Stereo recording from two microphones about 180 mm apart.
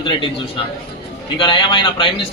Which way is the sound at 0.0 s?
25° left (ahead or behind).